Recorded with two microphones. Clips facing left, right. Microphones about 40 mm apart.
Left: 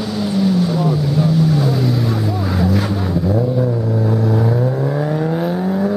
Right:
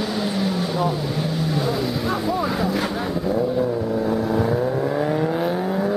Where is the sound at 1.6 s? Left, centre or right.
Centre.